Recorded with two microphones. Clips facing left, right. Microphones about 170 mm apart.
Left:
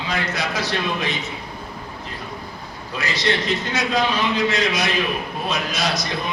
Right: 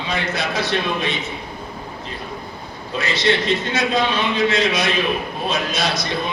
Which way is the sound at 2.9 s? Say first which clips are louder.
Right 3 dB; 25° right (ahead or behind).